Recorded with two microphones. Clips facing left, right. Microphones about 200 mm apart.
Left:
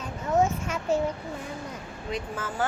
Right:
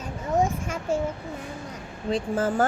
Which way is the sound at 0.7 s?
10° right (ahead or behind).